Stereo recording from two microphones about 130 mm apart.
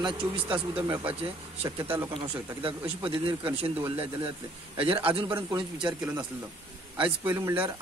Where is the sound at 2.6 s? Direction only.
40° right (ahead or behind).